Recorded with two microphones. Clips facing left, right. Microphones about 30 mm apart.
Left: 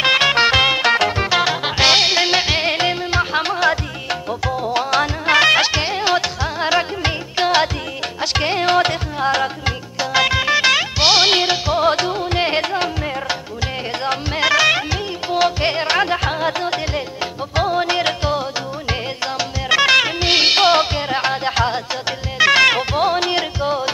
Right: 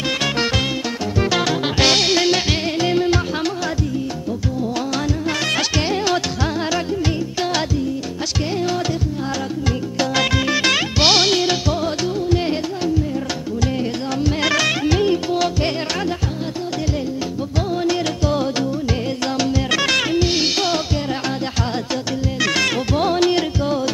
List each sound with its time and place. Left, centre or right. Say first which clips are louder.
0.0 s music: left 6 dB; left
0.8 s music: left 9 dB; left
1.3 s music: left 2 dB; centre
4.7 s music: left 4 dB; left
8.5 s music: left 6 dB; left
10.1 s music: left 5 dB; centre
11.2 s music: left 2 dB; left
11.8 s music: left 4 dB; left
14.4 s music: left 5 dB; centre
15.3 s music: left 3 dB; left
17.6 s music: left 3 dB; left
19.3 s music: left 3 dB; centre
20.2 s music: left 5 dB; left
22.9 s music: even; centre